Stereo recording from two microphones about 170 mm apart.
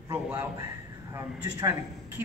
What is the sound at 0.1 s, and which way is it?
A man's voice, 5° right (ahead or behind).